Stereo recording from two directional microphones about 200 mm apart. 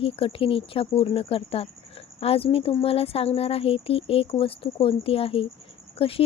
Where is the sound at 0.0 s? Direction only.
25° left (ahead or behind).